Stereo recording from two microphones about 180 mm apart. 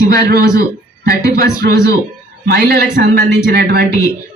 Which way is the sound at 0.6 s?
60° right (ahead or behind).